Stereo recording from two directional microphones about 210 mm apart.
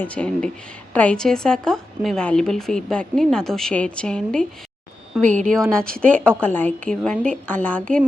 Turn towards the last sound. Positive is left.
turn(degrees=5)  # may be behind; listen again after turning